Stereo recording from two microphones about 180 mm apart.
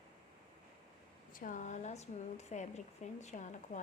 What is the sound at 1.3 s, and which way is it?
Speech, 45° left (ahead or behind).